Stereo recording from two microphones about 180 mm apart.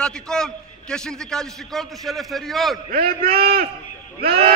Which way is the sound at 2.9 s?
55° right (ahead or behind).